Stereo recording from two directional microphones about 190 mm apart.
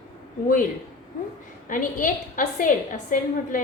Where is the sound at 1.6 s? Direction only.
45° left (ahead or behind).